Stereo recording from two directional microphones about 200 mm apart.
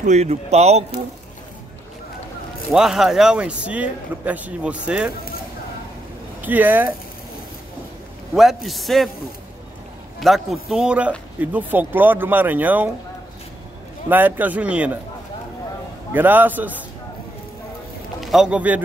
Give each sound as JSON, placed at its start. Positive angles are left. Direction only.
{"t": 0.0, "sound": "a man's voice", "side_deg": -35}
{"t": 2.7, "sound": "a man's voice", "side_deg": -5}
{"t": 6.4, "sound": "speech", "side_deg": -10}
{"t": 8.4, "sound": "a man's voice", "side_deg": 0}
{"t": 10.2, "sound": "speech", "side_deg": 0}
{"t": 14.0, "sound": "speech", "side_deg": -10}
{"t": 16.1, "sound": "speech", "side_deg": -10}
{"t": 18.2, "sound": "a man's voice", "side_deg": 0}